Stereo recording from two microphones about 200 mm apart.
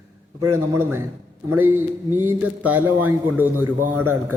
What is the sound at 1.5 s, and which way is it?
Speech, 90° right.